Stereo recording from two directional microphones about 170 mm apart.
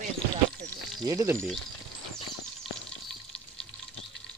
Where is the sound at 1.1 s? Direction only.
15° right (ahead or behind).